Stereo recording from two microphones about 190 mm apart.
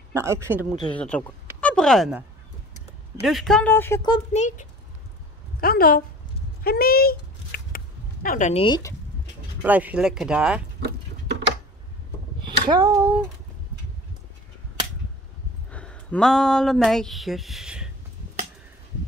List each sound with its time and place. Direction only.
0.1 s a woman's voice: 15° right (ahead or behind)
0.9 s speech: 5° left (ahead or behind)
3.3 s speech: centre (ahead or behind)
4.1 s speech: 35° left (ahead or behind)
5.6 s a woman's voice: 50° left (ahead or behind)
6.6 s a sound: 50° left (ahead or behind)
8.6 s speech: 20° left (ahead or behind)
9.6 s speech: 10° right (ahead or behind)
10.8 s a sound: 65° right (ahead or behind)
12.6 s a woman's voice: 20° right (ahead or behind)
15.7 s speech: 5° left (ahead or behind)